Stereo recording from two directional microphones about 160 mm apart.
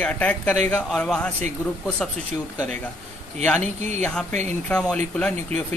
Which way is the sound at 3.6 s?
45° right (ahead or behind).